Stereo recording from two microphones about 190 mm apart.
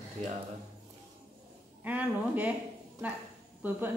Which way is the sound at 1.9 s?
10° right (ahead or behind).